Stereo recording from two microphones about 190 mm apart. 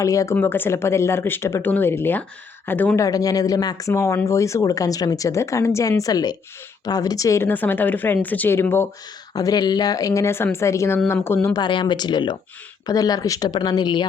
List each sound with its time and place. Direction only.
0.0 s speech: 15° left (ahead or behind)